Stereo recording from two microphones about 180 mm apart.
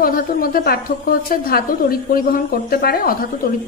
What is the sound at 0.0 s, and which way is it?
A woman's voice, 55° left (ahead or behind).